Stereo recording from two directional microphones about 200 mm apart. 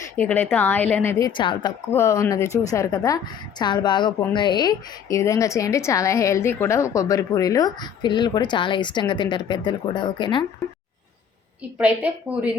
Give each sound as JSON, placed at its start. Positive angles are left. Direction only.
{"t": 0.2, "sound": "a woman's voice", "side_deg": 10}
{"t": 1.3, "sound": "a woman's voice", "side_deg": 25}
{"t": 11.8, "sound": "a woman's voice", "side_deg": -5}